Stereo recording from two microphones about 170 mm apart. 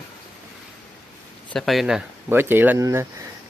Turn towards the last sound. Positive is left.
turn(degrees=-15)  # may be behind; listen again after turning